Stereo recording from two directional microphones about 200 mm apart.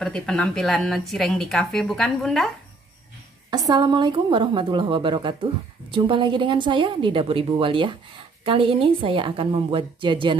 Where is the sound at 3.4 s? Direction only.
20° right (ahead or behind).